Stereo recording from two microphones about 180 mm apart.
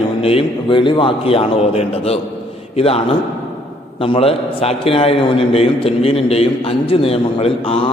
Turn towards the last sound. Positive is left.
turn(degrees=35)  # may be behind; listen again after turning